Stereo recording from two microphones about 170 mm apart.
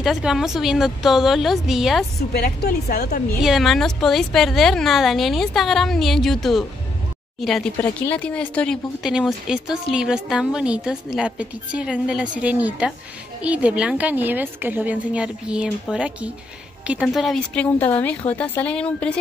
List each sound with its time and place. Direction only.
0.0 s speech: centre (ahead or behind)
2.3 s speech: 65° left (ahead or behind)
3.4 s speech: centre (ahead or behind)
7.7 s a woman's voice: 10° left (ahead or behind)
9.0 s a woman's voice: 5° right (ahead or behind)